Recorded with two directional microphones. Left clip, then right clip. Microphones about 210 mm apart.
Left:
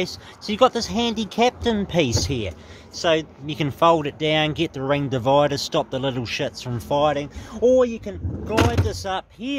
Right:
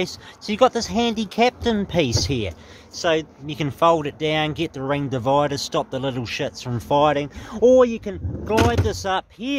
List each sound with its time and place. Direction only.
0.0 s speech: 10° right (ahead or behind)
6.7 s speech: 20° right (ahead or behind)
9.4 s speech: 15° right (ahead or behind)